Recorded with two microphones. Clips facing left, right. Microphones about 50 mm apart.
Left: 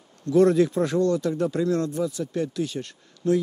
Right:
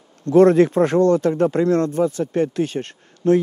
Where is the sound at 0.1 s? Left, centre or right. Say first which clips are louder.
Right 6 dB; right.